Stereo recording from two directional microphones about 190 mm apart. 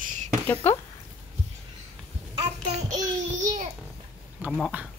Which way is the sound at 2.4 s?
35° right (ahead or behind).